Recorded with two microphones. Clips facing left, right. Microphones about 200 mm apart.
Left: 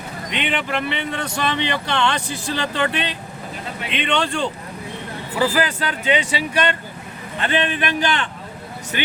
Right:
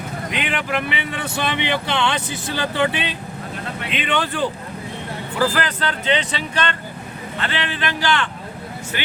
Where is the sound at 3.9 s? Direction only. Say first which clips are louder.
Left 1 dB; 5° right (ahead or behind).